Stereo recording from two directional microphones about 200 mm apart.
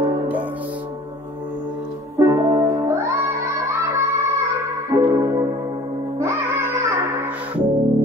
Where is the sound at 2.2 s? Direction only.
15° right (ahead or behind).